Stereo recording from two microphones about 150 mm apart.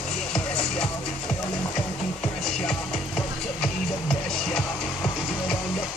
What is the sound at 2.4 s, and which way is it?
Music, 5° left (ahead or behind).